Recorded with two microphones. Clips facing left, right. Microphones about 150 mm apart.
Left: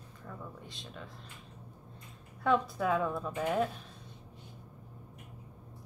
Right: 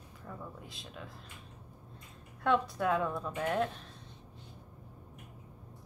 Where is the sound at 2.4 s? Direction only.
Centre (ahead or behind).